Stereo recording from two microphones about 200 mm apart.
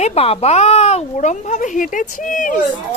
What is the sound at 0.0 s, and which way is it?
Speech, 30° left (ahead or behind).